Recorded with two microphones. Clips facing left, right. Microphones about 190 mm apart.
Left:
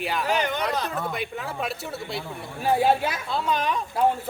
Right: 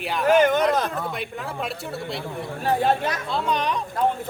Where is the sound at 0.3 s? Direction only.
50° right (ahead or behind).